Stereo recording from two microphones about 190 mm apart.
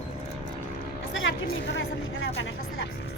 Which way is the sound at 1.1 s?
90° left.